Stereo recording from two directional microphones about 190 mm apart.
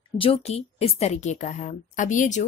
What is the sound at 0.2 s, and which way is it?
A woman's voice, 30° left (ahead or behind).